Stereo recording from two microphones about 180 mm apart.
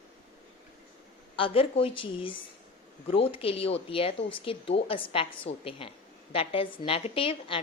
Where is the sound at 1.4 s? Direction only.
30° left (ahead or behind).